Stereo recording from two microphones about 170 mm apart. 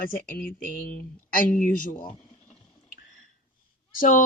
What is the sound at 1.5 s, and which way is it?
Speech, 50° left (ahead or behind).